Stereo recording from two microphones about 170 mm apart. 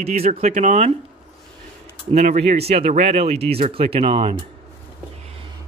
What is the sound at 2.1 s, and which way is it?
Speech, 40° right (ahead or behind).